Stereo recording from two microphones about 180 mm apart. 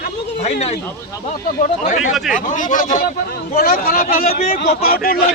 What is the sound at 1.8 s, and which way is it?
A man's voice, 45° left (ahead or behind).